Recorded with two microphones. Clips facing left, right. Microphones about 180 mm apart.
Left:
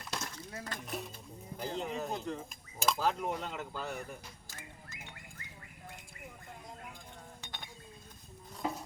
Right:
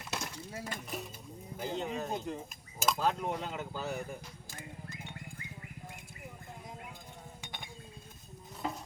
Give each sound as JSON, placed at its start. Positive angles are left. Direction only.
{"t": 0.0, "sound": "breaking", "side_deg": -10}
{"t": 1.5, "sound": "speech", "side_deg": 0}
{"t": 2.1, "sound": "speech", "side_deg": -15}
{"t": 2.7, "sound": "speech", "side_deg": 0}
{"t": 7.4, "sound": "chink", "side_deg": -10}